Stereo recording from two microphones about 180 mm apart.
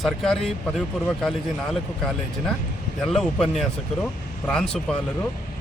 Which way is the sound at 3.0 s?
Centre (ahead or behind).